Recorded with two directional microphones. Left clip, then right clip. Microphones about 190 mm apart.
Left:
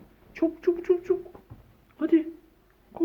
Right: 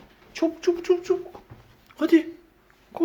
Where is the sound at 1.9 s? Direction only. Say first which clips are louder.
Right 4 dB; 25° right (ahead or behind).